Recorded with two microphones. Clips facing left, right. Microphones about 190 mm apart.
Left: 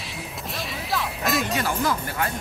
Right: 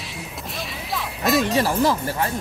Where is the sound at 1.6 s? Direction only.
30° right (ahead or behind).